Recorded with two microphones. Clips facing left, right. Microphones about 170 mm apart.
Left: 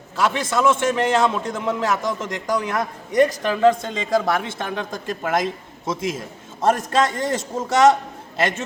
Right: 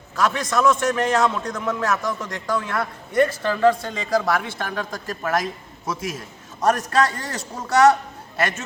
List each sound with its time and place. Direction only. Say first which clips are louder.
0.2 s a man's voice: left 1 dB; 25° left (ahead or behind)